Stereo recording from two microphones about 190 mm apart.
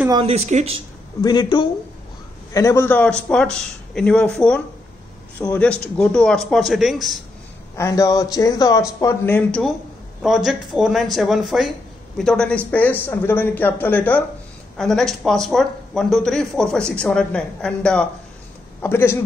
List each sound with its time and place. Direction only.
0.1 s speech: 30° right (ahead or behind)
1.2 s speech: 20° left (ahead or behind); by 7.2 s centre (ahead or behind)
7.7 s speech: 15° left (ahead or behind)